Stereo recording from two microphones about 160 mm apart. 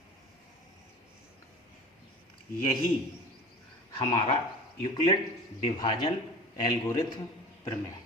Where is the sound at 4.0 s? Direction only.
30° left (ahead or behind).